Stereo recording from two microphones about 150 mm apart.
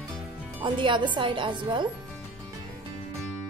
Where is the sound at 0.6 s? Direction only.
30° right (ahead or behind).